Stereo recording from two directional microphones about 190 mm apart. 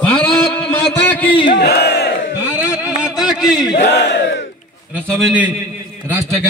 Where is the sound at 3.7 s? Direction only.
65° left (ahead or behind).